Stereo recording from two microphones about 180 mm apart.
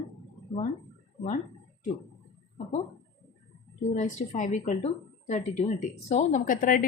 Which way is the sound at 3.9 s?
40° left (ahead or behind).